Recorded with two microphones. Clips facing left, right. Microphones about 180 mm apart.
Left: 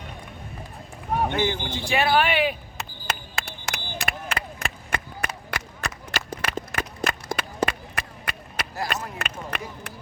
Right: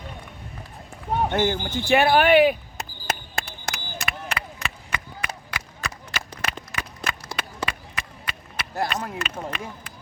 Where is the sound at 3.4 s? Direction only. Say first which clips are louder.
Even; 55° left (ahead or behind).